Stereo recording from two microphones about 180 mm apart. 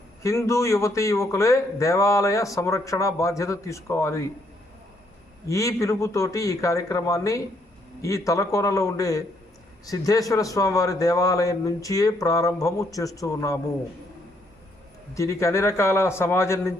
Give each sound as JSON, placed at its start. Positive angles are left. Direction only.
{"t": 0.2, "sound": "a man's voice", "side_deg": 15}
{"t": 5.5, "sound": "a man's voice", "side_deg": 15}
{"t": 15.1, "sound": "a man's voice", "side_deg": 15}